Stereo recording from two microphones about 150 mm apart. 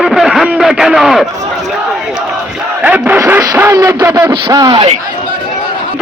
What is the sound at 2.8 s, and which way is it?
Speech, 10° right (ahead or behind).